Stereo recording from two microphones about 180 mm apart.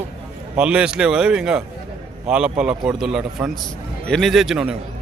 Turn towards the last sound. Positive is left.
turn(degrees=-5)  # may be behind; listen again after turning